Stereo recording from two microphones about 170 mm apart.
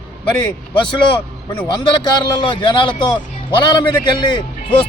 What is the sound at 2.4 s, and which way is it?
A man's voice, 25° left (ahead or behind).